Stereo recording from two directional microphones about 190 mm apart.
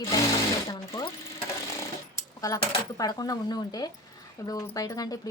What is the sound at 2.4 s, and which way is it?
Speech, 20° left (ahead or behind).